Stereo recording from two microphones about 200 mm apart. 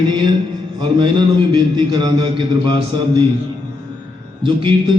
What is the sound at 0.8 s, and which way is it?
A man's voice, 25° right (ahead or behind).